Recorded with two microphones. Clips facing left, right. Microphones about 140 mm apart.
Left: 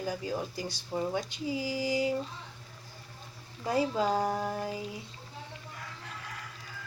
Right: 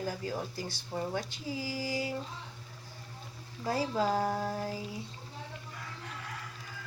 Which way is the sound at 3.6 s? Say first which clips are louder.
Left 2 dB; 20° left (ahead or behind).